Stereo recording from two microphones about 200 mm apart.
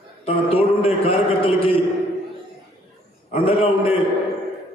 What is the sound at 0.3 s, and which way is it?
A man's voice, 30° left (ahead or behind).